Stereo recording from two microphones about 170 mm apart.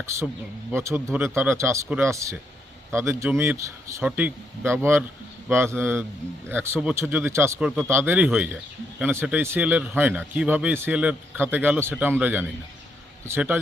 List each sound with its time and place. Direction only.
0.1 s a man's voice: 15° right (ahead or behind)